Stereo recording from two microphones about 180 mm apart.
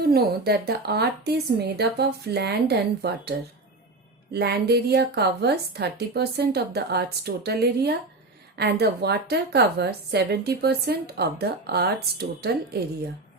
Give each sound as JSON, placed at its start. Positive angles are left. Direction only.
{"t": 0.0, "sound": "a woman's voice", "side_deg": -60}